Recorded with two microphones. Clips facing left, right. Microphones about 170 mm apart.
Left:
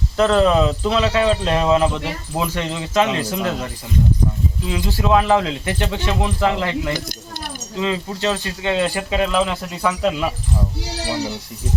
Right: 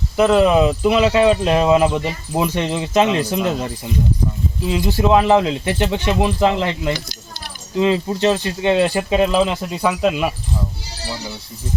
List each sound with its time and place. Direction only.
0.2 s speech: 15° right (ahead or behind)